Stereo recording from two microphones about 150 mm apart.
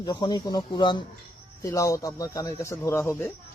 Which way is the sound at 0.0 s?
30° left (ahead or behind).